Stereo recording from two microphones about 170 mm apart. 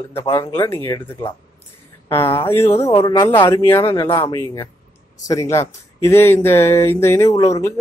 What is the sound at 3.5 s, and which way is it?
Speech, 15° left (ahead or behind).